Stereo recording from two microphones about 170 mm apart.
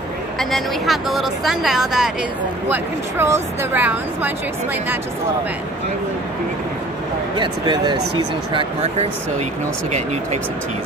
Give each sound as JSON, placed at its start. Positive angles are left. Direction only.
{"t": 0.4, "sound": "speech", "side_deg": 0}
{"t": 2.7, "sound": "speech", "side_deg": -15}
{"t": 7.3, "sound": "speech", "side_deg": -25}